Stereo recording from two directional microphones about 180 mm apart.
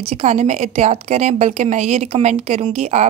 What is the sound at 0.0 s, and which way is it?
A woman's voice, 35° right (ahead or behind).